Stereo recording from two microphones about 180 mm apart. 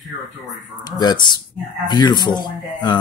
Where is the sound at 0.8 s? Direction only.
25° left (ahead or behind).